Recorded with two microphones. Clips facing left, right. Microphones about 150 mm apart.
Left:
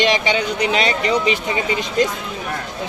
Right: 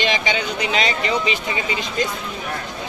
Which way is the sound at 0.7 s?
60° left (ahead or behind).